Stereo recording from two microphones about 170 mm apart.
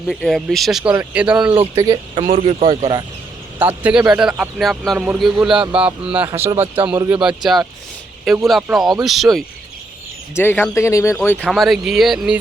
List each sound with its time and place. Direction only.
0.1 s a man's voice: centre (ahead or behind)
1.7 s speech: 20° right (ahead or behind)
3.6 s a man's voice: 10° right (ahead or behind)
10.3 s speech: 10° left (ahead or behind)
11.4 s speech: centre (ahead or behind)